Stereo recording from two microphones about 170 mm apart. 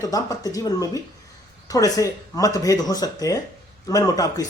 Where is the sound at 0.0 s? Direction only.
20° left (ahead or behind).